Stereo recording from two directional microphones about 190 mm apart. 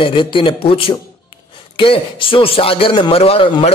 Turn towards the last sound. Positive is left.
turn(degrees=30)  # may be behind; listen again after turning